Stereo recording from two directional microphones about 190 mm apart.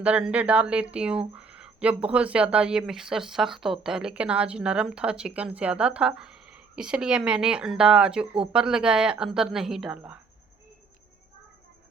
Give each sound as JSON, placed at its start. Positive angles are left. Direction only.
{"t": 0.0, "sound": "speech", "side_deg": -5}